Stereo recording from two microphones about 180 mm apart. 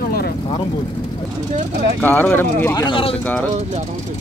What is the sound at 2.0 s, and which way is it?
Speech, 10° left (ahead or behind).